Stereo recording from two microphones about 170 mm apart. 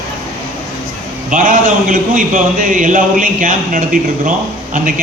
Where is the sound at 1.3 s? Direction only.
50° right (ahead or behind).